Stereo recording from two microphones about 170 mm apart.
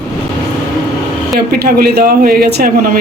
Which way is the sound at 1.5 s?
60° right (ahead or behind).